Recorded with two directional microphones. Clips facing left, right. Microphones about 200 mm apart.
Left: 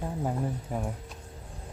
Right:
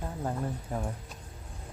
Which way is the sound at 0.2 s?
10° left (ahead or behind).